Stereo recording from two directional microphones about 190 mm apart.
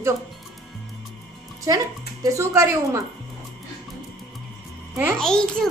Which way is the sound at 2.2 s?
15° right (ahead or behind).